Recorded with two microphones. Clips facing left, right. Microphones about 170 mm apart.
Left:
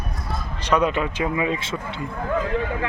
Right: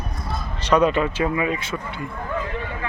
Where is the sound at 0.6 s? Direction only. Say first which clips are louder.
Right 3 dB; 10° left (ahead or behind).